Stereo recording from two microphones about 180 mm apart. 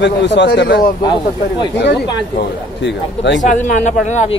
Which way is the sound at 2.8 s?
80° left.